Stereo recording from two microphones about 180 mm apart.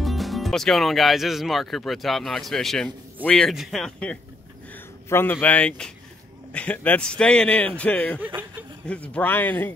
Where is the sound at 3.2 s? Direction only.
5° left (ahead or behind).